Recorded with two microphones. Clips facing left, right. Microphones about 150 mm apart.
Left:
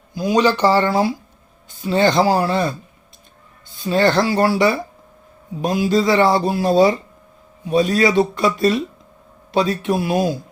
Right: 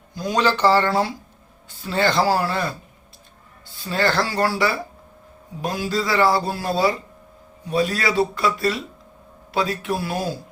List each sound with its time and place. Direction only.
0.1 s speech: 10° left (ahead or behind)